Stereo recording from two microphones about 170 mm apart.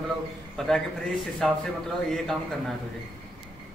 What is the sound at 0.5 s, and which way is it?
A man's voice, 5° left (ahead or behind).